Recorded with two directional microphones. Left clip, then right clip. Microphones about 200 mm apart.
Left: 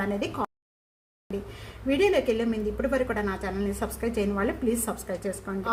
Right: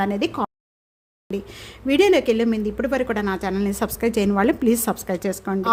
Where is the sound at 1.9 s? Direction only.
50° right (ahead or behind).